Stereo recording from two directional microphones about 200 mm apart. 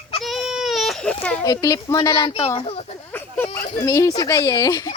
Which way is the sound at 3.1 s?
10° left (ahead or behind).